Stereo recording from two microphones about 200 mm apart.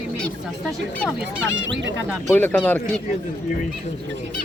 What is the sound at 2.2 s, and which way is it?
Speech, 10° left (ahead or behind).